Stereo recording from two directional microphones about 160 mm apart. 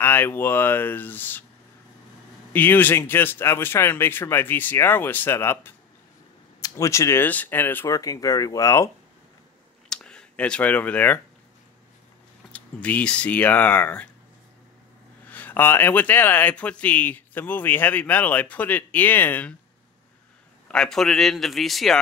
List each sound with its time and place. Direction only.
0.0 s speech: 10° left (ahead or behind)
2.5 s speech: 10° left (ahead or behind)
9.8 s a sound: 5° left (ahead or behind)
12.5 s speech: 10° left (ahead or behind)
15.2 s speech: 10° left (ahead or behind)
20.6 s a man's voice: 5° left (ahead or behind)